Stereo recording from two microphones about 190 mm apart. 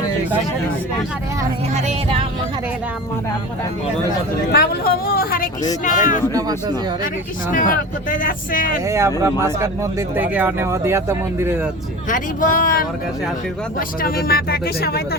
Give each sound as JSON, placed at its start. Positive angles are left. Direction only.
{"t": 1.7, "sound": "music", "side_deg": -30}
{"t": 4.5, "sound": "speech", "side_deg": 55}
{"t": 6.3, "sound": "speech", "side_deg": -20}
{"t": 7.5, "sound": "speech", "side_deg": 45}
{"t": 8.9, "sound": "speech", "side_deg": -15}
{"t": 12.0, "sound": "speech", "side_deg": 45}